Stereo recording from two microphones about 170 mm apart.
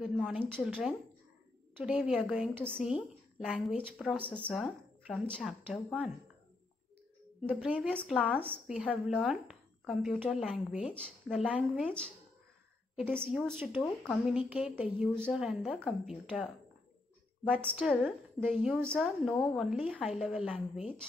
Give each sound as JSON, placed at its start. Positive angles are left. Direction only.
{"t": 0.0, "sound": "a sound", "side_deg": -5}
{"t": 1.8, "sound": "a woman's voice", "side_deg": -5}
{"t": 7.4, "sound": "a woman's voice", "side_deg": -10}
{"t": 7.9, "sound": "speech", "side_deg": 5}
{"t": 8.6, "sound": "a woman's voice", "side_deg": -5}
{"t": 13.4, "sound": "speech", "side_deg": 0}
{"t": 14.5, "sound": "speech", "side_deg": -5}
{"t": 17.5, "sound": "speech", "side_deg": -5}